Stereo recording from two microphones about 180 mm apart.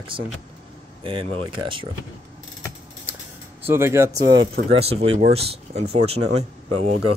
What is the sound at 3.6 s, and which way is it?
Speech, 15° right (ahead or behind).